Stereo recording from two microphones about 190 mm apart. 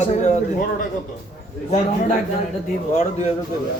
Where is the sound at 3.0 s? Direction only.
35° left (ahead or behind).